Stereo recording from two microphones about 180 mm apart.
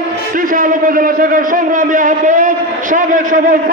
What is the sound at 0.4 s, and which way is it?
A man's voice, 50° right (ahead or behind).